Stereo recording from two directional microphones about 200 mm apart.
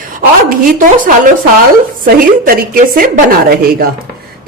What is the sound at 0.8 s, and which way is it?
A woman's voice, 40° right (ahead or behind).